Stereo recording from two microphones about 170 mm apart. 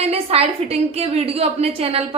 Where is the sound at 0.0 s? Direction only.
35° right (ahead or behind).